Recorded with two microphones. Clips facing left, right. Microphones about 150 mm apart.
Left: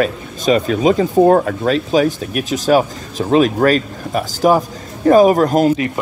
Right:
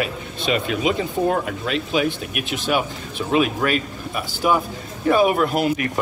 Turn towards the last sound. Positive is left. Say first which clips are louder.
# left 7 dB
turn(degrees=40)  # may be behind; listen again after turning